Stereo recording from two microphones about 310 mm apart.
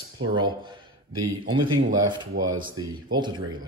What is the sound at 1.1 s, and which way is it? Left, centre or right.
Speech, right.